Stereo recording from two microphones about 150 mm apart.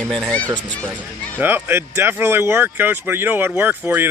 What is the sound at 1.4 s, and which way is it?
Speech, 15° right (ahead or behind).